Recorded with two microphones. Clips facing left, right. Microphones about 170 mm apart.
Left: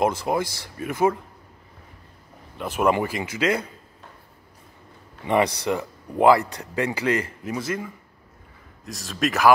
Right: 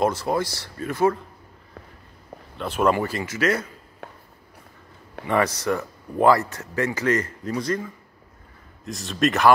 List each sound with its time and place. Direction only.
0.0 s speech: 15° left (ahead or behind)
2.5 s speech: 10° left (ahead or behind)
5.2 s a man's voice: 15° left (ahead or behind); by 9.5 s centre (ahead or behind)